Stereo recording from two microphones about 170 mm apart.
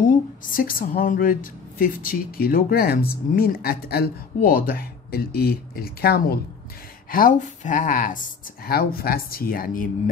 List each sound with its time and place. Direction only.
0.5 s speech: 55° left (ahead or behind)
7.1 s speech: 55° left (ahead or behind)
8.6 s speech: 65° left (ahead or behind)